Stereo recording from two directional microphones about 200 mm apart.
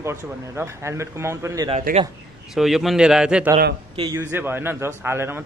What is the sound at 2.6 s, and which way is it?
Speech, centre (ahead or behind).